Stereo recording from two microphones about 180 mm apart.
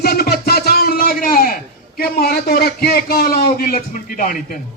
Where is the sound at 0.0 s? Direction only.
60° left (ahead or behind).